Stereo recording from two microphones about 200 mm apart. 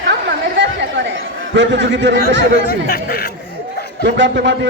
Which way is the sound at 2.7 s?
50° left (ahead or behind).